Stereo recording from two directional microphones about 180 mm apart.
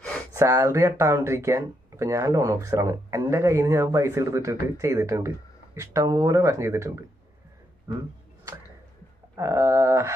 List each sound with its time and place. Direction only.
0.3 s speech: 15° right (ahead or behind)
7.9 s a sound: 20° right (ahead or behind)
9.3 s speech: 15° right (ahead or behind)